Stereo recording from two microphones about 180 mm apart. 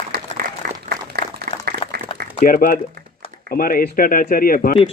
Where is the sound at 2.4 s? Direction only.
50° left (ahead or behind).